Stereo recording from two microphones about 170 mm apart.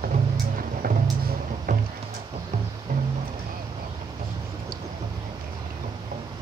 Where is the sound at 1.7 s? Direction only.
50° right (ahead or behind).